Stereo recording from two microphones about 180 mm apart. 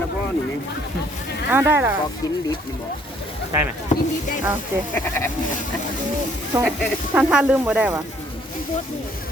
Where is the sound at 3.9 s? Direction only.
40° left (ahead or behind).